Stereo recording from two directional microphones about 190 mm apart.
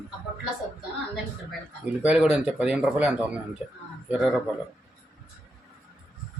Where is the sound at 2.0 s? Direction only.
5° right (ahead or behind).